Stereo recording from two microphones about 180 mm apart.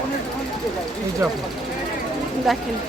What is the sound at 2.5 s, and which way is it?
Speech, centre (ahead or behind).